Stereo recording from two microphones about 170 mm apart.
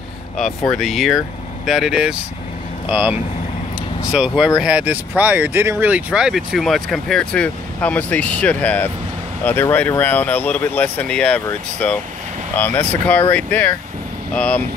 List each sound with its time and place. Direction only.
0.7 s speech: centre (ahead or behind)